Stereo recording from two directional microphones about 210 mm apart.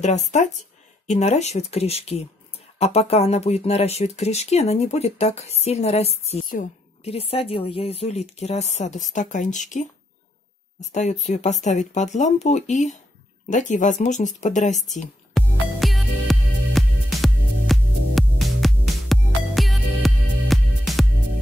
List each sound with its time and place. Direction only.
0.0 s speech: 35° left (ahead or behind)
15.3 s music: centre (ahead or behind)